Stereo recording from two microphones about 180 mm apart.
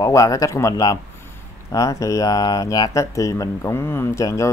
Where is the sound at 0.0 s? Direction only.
20° left (ahead or behind).